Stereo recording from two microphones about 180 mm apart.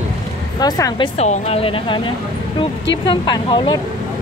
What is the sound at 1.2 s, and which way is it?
Speech, 35° left (ahead or behind).